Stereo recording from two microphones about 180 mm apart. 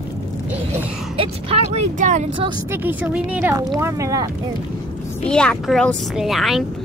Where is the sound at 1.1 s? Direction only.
35° right (ahead or behind).